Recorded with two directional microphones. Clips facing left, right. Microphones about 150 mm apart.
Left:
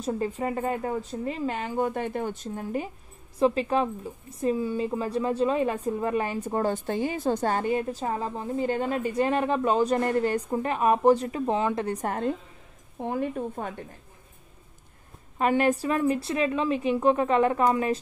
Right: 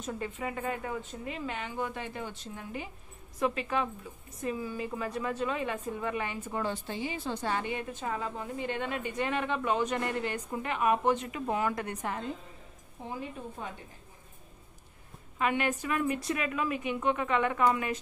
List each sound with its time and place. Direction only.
0.0 s a woman's voice: 35° left (ahead or behind)
3.3 s a woman's voice: 30° left (ahead or behind)
12.1 s a woman's voice: 55° left (ahead or behind)
15.3 s a woman's voice: 40° left (ahead or behind)